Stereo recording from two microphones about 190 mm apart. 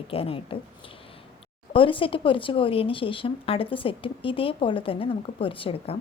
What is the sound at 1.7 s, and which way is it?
A woman's voice, 25° left (ahead or behind).